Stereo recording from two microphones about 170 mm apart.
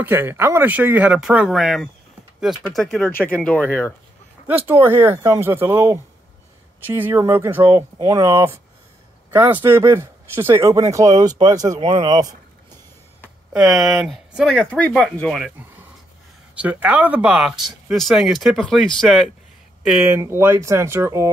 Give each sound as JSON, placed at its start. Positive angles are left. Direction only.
{"t": 0.0, "sound": "speech", "side_deg": -10}
{"t": 4.5, "sound": "speech", "side_deg": -10}
{"t": 13.2, "sound": "speech", "side_deg": -5}
{"t": 16.5, "sound": "speech", "side_deg": -10}